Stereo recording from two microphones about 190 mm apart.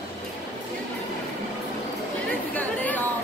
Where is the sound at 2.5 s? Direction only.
10° left (ahead or behind).